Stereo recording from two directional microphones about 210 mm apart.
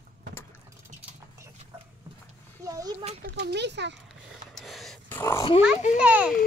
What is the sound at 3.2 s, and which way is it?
Speech, 50° right (ahead or behind).